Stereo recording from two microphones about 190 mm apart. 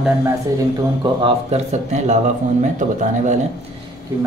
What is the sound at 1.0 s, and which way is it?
A man's voice, 30° right (ahead or behind).